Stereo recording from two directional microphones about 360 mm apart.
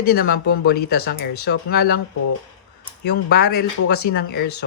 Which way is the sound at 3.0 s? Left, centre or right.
Left.